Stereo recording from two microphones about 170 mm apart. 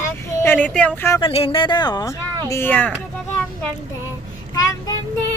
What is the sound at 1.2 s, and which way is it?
Speech, 35° left (ahead or behind).